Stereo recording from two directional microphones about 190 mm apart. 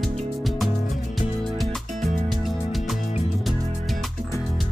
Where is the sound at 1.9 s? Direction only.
40° right (ahead or behind).